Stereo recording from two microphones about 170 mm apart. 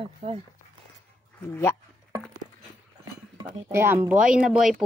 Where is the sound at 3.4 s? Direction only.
15° right (ahead or behind).